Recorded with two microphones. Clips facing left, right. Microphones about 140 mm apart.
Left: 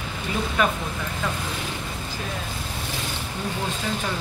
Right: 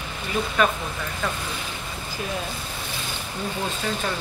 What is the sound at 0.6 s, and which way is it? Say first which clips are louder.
Speech: right 1 dB; 15° left (ahead or behind).